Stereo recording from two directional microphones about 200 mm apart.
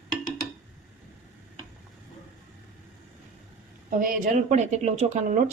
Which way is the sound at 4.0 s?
40° right (ahead or behind).